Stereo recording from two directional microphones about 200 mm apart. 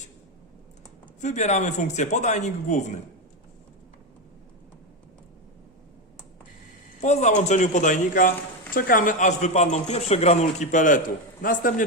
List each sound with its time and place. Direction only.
1.2 s a man's voice: 35° left (ahead or behind)
7.0 s a man's voice: 35° left (ahead or behind)